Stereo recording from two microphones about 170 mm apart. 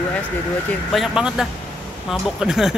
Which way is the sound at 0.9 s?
Centre (ahead or behind).